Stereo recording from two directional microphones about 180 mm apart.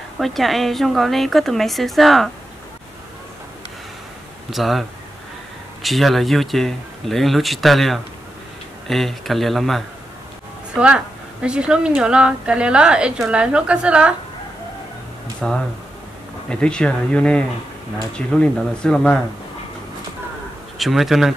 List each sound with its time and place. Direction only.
0.2 s a woman's voice: centre (ahead or behind)
4.5 s a woman's voice: centre (ahead or behind)
15.4 s a woman's voice: centre (ahead or behind)
20.7 s a woman's voice: centre (ahead or behind)